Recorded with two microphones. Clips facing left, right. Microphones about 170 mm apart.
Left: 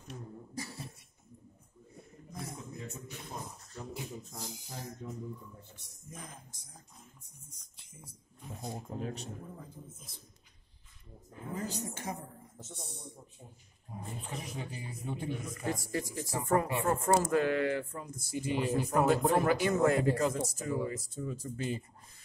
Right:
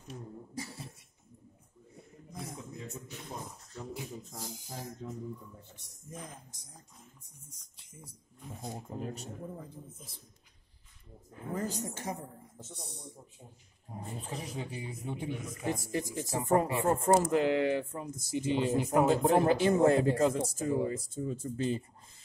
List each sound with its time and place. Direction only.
8.6 s speech: 5° right (ahead or behind)
11.5 s a woman's voice: 45° right (ahead or behind)
14.2 s speech: 30° right (ahead or behind)
14.9 s speech: 20° right (ahead or behind)